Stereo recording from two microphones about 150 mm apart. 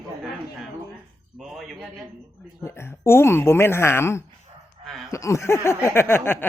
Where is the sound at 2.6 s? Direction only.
15° left (ahead or behind).